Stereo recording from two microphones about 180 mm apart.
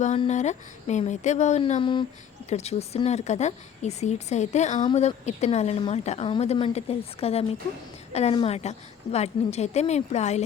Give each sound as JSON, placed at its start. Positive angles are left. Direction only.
{"t": 0.2, "sound": "a woman's voice", "side_deg": 40}
{"t": 2.5, "sound": "a woman's voice", "side_deg": 35}